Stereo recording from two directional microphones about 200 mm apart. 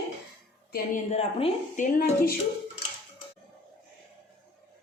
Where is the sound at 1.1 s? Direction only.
35° left (ahead or behind).